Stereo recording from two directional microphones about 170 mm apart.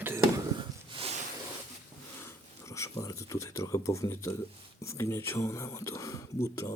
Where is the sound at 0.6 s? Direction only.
30° right (ahead or behind).